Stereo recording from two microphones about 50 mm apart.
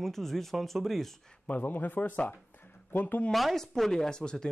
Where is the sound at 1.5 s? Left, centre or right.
Left.